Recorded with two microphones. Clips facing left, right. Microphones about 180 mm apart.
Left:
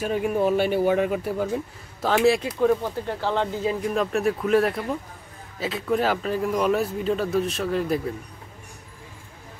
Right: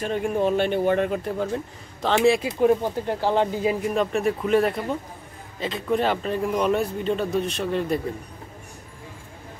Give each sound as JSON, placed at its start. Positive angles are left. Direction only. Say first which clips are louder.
{"t": 0.0, "sound": "a man's voice", "louder": "left 1 dB", "side_deg": 5}
{"t": 2.4, "sound": "speech", "louder": "right 2 dB", "side_deg": -20}
{"t": 3.9, "sound": "a man's voice", "louder": "even", "side_deg": 0}